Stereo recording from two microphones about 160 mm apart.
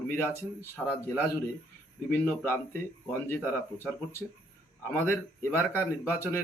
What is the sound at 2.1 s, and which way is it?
Speech, 10° left (ahead or behind).